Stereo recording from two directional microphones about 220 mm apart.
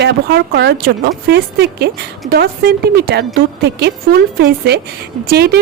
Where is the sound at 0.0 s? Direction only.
50° right (ahead or behind).